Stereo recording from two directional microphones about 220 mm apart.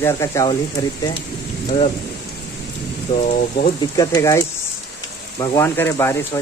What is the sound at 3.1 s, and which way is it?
Speech, 15° left (ahead or behind).